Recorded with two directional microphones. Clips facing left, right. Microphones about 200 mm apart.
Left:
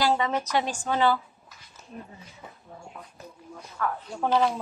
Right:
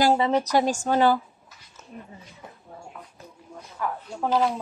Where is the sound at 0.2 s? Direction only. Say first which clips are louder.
Right 5 dB; 35° right (ahead or behind).